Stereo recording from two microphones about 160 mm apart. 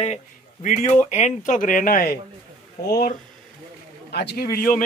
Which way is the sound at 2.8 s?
80° left.